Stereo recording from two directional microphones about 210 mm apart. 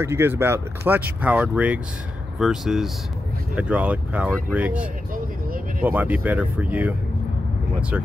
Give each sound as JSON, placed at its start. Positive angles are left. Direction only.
{"t": 0.0, "sound": "speech", "side_deg": -10}
{"t": 4.7, "sound": "vehicle", "side_deg": -40}
{"t": 5.8, "sound": "speech", "side_deg": -10}